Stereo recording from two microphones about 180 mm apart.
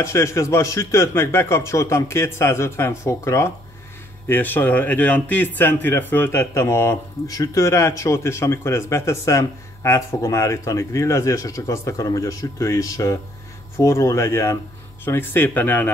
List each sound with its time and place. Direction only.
0.0 s a man's voice: 15° left (ahead or behind)